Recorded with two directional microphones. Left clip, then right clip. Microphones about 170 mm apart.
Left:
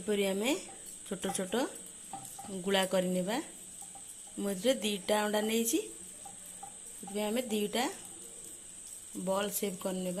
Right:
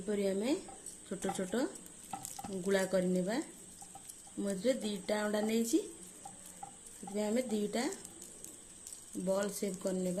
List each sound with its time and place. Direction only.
0.1 s speech: 10° left (ahead or behind)
7.1 s speech: centre (ahead or behind)
9.2 s speech: centre (ahead or behind)